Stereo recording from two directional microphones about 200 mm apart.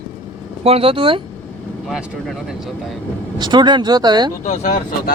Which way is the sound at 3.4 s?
20° right (ahead or behind).